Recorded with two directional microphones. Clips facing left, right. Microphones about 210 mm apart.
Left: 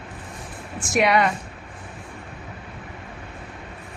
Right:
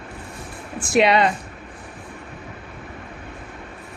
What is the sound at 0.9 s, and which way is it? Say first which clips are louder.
Speech: right 3 dB; 25° right (ahead or behind).